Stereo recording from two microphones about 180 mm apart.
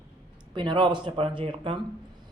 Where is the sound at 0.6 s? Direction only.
25° right (ahead or behind).